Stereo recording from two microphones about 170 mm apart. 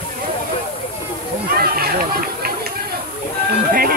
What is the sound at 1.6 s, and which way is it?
Run, 60° right (ahead or behind).